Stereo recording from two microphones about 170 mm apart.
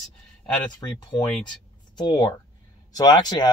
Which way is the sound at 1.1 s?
25° left (ahead or behind).